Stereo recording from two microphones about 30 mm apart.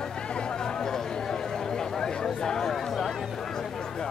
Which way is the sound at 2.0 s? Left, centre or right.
Left.